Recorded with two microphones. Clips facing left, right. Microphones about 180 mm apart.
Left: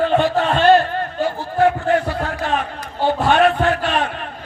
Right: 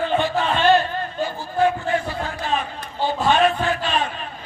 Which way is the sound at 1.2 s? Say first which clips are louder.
Left 3 dB; 70° left (ahead or behind).